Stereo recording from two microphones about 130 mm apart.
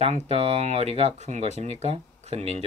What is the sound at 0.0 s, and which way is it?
Speech, 55° right (ahead or behind).